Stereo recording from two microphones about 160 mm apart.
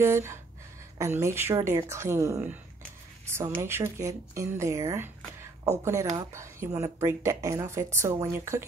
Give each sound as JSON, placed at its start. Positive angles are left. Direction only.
{"t": 0.0, "sound": "a woman's voice", "side_deg": -15}
{"t": 6.3, "sound": "a woman's voice", "side_deg": -20}